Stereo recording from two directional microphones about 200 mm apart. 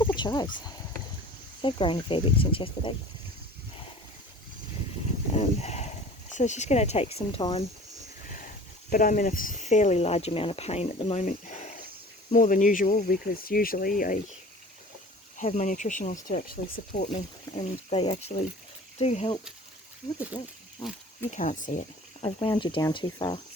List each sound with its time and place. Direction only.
0.0 s a sound: 20° left (ahead or behind)
1.6 s speech: 25° left (ahead or behind)
5.3 s livestock: 30° left (ahead or behind)
6.3 s speech: 35° left (ahead or behind)
8.9 s speech: 40° left (ahead or behind)
15.4 s speech: 40° left (ahead or behind)
17.1 s speech: 30° left (ahead or behind)
20.1 s speech: 20° left (ahead or behind)
21.2 s speech: 40° left (ahead or behind)
22.2 s speech: 25° left (ahead or behind)